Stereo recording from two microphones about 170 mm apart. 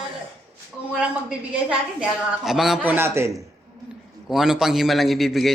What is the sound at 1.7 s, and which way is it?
A woman's voice, 5° right (ahead or behind).